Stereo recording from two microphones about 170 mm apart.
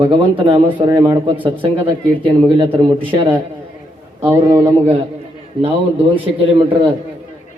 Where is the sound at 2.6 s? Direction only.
30° right (ahead or behind).